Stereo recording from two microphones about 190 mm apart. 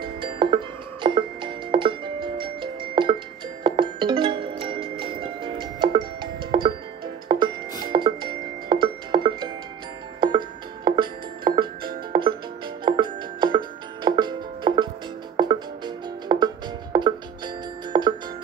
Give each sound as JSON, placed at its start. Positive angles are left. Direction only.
{"t": 0.0, "sound": "music", "side_deg": -25}